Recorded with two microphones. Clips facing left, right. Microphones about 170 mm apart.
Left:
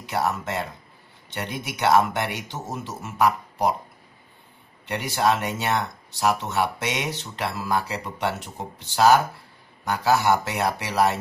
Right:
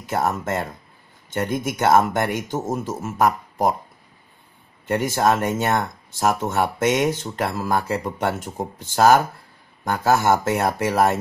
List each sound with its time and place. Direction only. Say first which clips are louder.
0.0 s speech: right 3 dB; 45° right (ahead or behind)
4.8 s speech: right 4 dB; 45° right (ahead or behind)